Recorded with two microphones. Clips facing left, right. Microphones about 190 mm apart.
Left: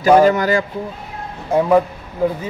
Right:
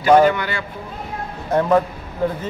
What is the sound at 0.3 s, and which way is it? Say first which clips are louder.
Speech: left 7 dB; 40° left (ahead or behind).